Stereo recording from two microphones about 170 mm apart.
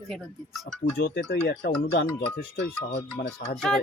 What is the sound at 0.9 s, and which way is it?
Speech, 75° left (ahead or behind).